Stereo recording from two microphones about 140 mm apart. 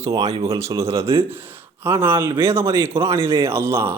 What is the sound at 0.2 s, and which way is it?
Speech, 50° right (ahead or behind).